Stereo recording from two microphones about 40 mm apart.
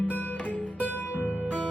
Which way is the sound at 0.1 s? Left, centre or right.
Left.